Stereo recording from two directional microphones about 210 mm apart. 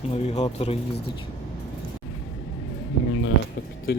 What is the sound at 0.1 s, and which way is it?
Speech, 30° left (ahead or behind).